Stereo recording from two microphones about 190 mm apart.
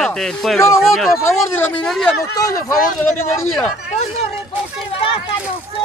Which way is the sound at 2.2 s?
15° left (ahead or behind).